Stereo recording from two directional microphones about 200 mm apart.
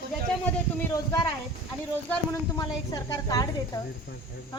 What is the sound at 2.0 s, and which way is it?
A woman's voice, 15° left (ahead or behind).